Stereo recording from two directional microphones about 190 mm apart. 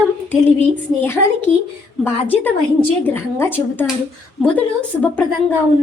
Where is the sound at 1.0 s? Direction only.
15° left (ahead or behind).